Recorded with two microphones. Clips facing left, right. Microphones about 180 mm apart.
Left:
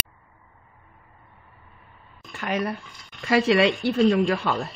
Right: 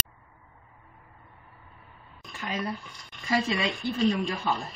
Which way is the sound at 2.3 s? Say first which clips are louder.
Left 6 dB; 70° left (ahead or behind).